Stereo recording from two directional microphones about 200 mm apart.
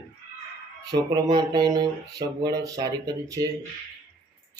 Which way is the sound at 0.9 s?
20° right (ahead or behind).